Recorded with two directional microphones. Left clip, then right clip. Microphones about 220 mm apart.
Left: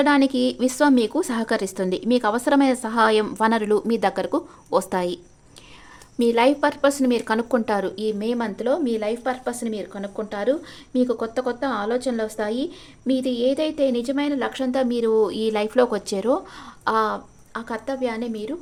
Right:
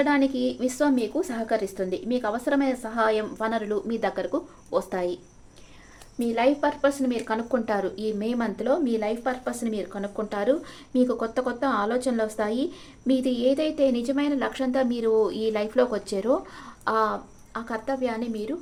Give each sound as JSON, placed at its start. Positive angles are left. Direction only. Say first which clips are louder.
{"t": 0.0, "sound": "a woman's voice", "louder": "left 4 dB", "side_deg": 40}